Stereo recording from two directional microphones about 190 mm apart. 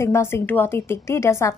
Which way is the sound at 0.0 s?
15° left (ahead or behind).